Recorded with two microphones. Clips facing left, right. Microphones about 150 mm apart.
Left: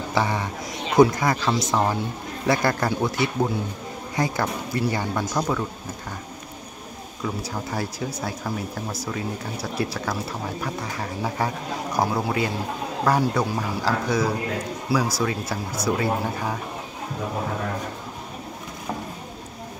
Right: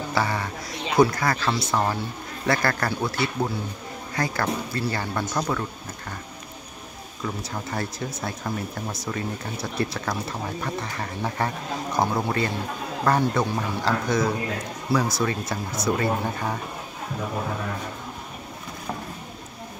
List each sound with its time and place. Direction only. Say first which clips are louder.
0.1 s speech: left 2 dB; 20° left (ahead or behind)
7.2 s speech: left 2 dB; 5° left (ahead or behind)